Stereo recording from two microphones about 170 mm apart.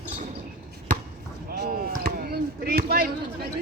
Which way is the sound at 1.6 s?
60° right (ahead or behind).